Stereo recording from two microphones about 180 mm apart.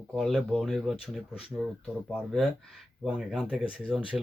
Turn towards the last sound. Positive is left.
turn(degrees=0)  # may be behind; listen again after turning